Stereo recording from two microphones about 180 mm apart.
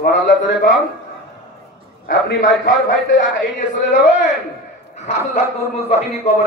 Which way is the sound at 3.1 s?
45° left (ahead or behind).